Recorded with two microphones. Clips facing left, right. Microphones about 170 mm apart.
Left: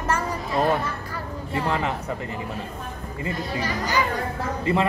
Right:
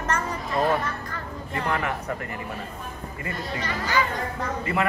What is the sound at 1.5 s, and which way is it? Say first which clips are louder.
Speech: left 2 dB; 20° left (ahead or behind).